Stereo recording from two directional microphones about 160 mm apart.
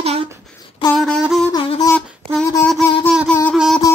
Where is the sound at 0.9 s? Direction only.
Centre (ahead or behind).